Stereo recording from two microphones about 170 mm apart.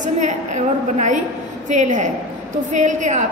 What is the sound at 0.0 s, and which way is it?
A woman's voice, 45° right (ahead or behind).